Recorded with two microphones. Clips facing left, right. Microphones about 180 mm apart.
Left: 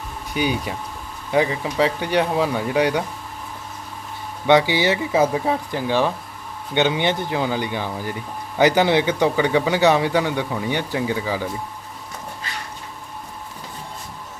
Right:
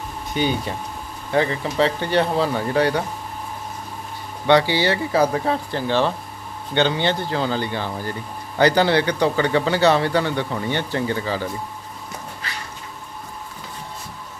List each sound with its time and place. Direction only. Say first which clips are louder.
0.3 s a man's voice: even; 10° left (ahead or behind)
4.4 s a man's voice: left 1 dB; 15° left (ahead or behind)